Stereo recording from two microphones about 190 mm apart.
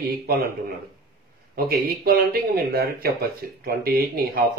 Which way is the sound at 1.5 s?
55° right (ahead or behind).